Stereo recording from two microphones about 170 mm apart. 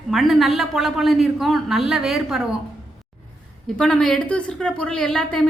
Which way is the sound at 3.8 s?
5° left (ahead or behind).